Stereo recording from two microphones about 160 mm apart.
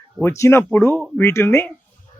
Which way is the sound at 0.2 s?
15° left (ahead or behind).